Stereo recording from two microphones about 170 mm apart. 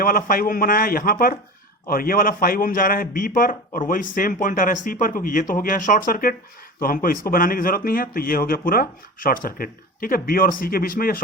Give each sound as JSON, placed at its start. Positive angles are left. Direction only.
{"t": 0.0, "sound": "a man's voice", "side_deg": 55}